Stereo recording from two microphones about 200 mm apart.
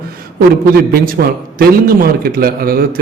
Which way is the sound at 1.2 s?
55° right (ahead or behind).